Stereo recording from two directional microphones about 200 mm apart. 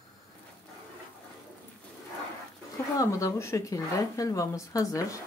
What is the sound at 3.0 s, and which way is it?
Speech, 15° left (ahead or behind).